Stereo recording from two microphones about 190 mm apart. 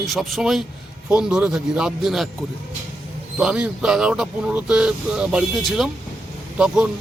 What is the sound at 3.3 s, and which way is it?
Speech, 5° right (ahead or behind).